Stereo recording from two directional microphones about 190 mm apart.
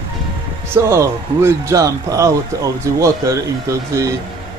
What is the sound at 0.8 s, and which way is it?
Speech, 15° right (ahead or behind).